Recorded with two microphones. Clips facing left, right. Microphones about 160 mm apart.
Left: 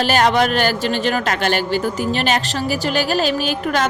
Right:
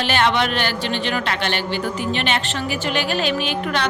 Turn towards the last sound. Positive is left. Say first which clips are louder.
# left 3 dB
turn(degrees=40)  # may be behind; listen again after turning